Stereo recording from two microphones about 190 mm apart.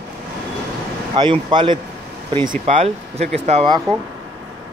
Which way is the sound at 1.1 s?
25° right (ahead or behind).